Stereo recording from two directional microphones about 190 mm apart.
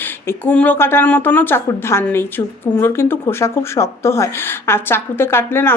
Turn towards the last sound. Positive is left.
turn(degrees=10)  # may be behind; listen again after turning